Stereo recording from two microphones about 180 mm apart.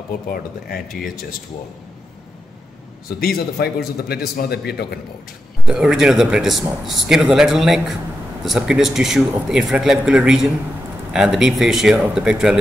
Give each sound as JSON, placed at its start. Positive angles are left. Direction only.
{"t": 0.3, "sound": "a man's voice", "side_deg": 55}
{"t": 3.2, "sound": "a man's voice", "side_deg": 60}
{"t": 5.7, "sound": "a man's voice", "side_deg": -5}